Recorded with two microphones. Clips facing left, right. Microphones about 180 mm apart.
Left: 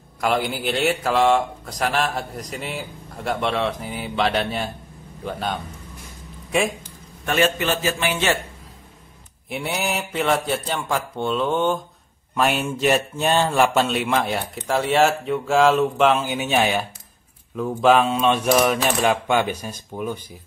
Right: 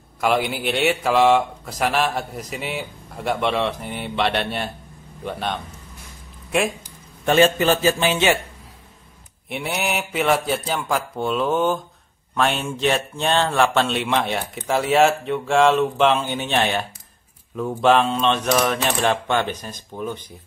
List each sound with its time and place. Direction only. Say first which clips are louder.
0.2 s a man's voice: right 1 dB; centre (ahead or behind)
7.2 s a man's voice: right 5 dB; 30° right (ahead or behind)
9.5 s a man's voice: even; centre (ahead or behind)
17.6 s typewriter: even; centre (ahead or behind)